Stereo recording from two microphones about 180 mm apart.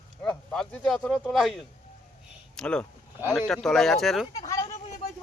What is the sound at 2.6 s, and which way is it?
Speech, 5° left (ahead or behind).